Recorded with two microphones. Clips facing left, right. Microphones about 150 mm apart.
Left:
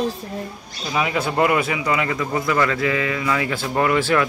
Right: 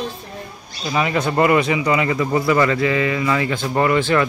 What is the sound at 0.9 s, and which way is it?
Speech, 5° left (ahead or behind).